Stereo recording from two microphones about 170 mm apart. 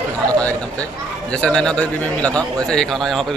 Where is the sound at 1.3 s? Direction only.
5° left (ahead or behind).